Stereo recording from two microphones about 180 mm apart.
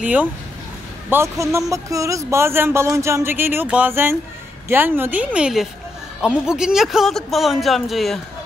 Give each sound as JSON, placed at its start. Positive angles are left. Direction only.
{"t": 0.0, "sound": "speech", "side_deg": -10}